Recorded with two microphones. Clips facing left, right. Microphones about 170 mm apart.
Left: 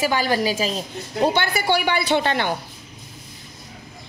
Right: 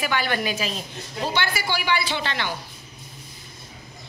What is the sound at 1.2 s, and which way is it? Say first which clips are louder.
A woman's voice: left 6 dB; 55° left (ahead or behind).